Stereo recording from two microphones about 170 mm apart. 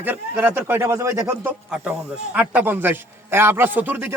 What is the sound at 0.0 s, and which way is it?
A man's voice, 10° right (ahead or behind).